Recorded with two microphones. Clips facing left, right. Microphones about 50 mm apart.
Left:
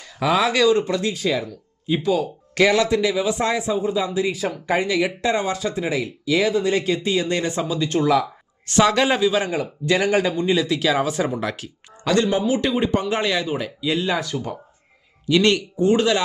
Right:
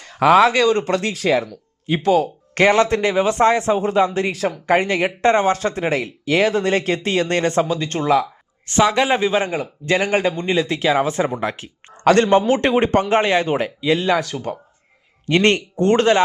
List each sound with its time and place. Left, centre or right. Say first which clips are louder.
0.0 s speech: right 7 dB; right
2.6 s speech: right 2 dB; right
3.8 s speech: right 4 dB; right
8.7 s speech: right 1 dB; centre
9.1 s speech: right 1 dB; right
12.0 s speech: right 6 dB; right
13.1 s speech: right 5 dB; right
13.4 s speech: right 5 dB; right
15.7 s speech: right 3 dB; right